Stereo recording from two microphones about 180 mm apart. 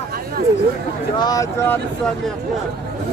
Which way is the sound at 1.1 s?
20° left (ahead or behind).